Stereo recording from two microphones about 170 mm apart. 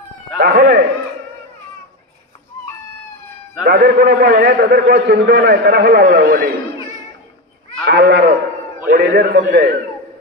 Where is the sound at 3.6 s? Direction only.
65° right (ahead or behind).